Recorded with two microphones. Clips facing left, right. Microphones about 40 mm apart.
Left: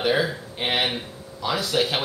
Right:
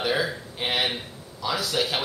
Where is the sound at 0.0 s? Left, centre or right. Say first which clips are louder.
Left 3 dB; centre.